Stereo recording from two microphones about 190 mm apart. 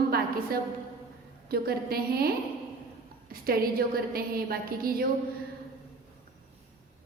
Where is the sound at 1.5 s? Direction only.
55° right (ahead or behind).